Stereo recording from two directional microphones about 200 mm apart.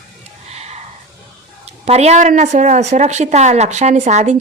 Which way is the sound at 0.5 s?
35° right (ahead or behind).